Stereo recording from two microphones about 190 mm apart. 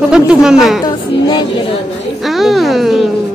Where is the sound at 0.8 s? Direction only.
25° left (ahead or behind).